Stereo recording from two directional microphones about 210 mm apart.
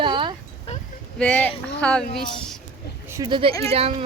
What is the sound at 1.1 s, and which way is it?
Speech, 5° left (ahead or behind).